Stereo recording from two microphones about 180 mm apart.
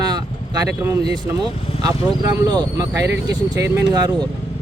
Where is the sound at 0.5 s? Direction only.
20° right (ahead or behind).